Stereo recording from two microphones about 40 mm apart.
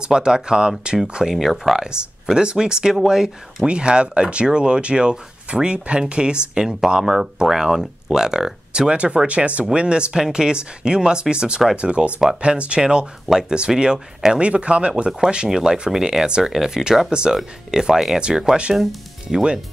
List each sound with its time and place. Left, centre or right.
0.0 s speech: right
1.3 s speech: centre
1.8 s speech: centre
3.6 s speech: right
13.3 s speech: centre
14.4 s speech: right
15.0 s speech: centre
19.2 s speech: right